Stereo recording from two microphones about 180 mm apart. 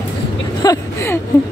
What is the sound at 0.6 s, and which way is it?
Vehicle, 15° left (ahead or behind).